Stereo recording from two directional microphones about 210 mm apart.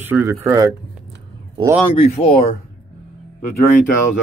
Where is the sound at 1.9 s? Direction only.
30° left (ahead or behind).